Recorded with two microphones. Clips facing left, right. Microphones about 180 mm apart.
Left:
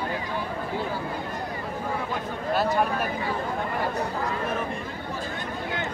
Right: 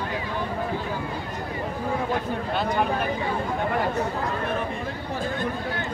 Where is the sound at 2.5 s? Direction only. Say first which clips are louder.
Left 2 dB; 5° left (ahead or behind).